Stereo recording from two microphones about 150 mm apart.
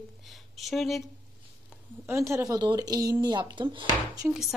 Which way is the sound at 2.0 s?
20° right (ahead or behind).